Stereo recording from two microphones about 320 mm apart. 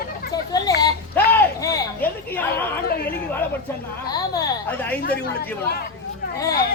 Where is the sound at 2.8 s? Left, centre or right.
Left.